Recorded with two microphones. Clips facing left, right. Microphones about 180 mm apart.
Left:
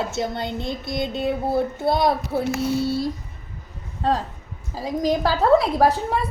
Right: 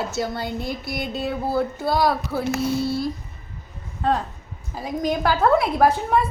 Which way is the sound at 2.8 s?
75° left (ahead or behind).